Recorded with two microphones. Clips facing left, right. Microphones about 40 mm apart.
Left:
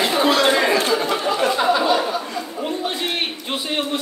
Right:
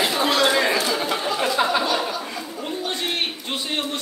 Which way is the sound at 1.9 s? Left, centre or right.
Centre.